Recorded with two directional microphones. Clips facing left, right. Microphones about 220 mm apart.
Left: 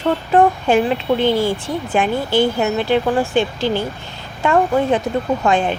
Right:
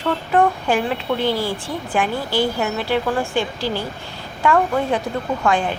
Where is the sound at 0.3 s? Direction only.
25° left (ahead or behind).